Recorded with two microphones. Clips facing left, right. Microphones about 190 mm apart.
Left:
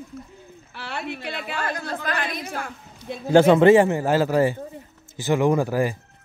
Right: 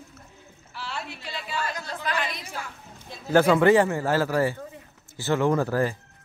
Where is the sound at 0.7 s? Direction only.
60° left (ahead or behind).